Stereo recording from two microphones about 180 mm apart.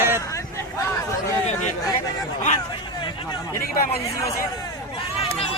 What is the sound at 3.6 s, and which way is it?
Speech, 55° left (ahead or behind).